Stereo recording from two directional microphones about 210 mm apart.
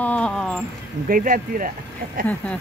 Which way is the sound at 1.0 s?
40° right (ahead or behind).